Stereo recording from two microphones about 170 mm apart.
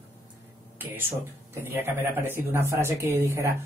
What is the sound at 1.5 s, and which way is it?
A woman's voice, 15° right (ahead or behind).